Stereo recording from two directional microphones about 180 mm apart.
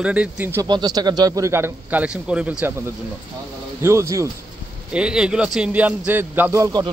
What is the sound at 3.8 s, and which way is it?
Speech, 15° right (ahead or behind).